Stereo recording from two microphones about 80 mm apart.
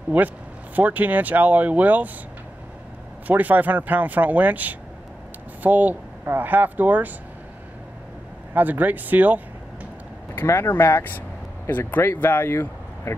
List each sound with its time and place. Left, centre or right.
0.1 s speech: centre
3.3 s speech: right
8.5 s speech: right
10.3 s speech: left